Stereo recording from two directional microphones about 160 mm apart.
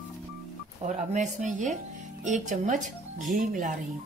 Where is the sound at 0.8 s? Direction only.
50° right (ahead or behind).